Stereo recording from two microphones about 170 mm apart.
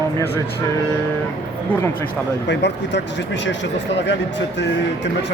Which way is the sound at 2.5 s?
90° left.